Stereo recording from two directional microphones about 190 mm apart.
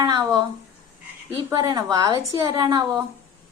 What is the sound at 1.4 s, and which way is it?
A woman's voice, 20° right (ahead or behind).